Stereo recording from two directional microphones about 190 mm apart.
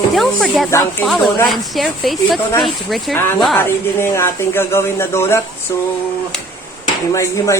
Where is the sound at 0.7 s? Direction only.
15° left (ahead or behind).